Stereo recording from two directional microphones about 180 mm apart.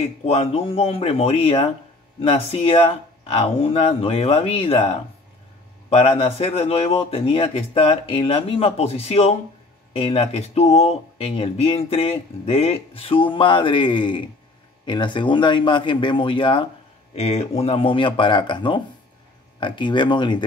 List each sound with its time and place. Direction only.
0.2 s speech: 35° left (ahead or behind)